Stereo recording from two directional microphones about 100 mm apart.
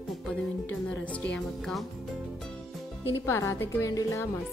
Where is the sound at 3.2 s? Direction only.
30° left (ahead or behind).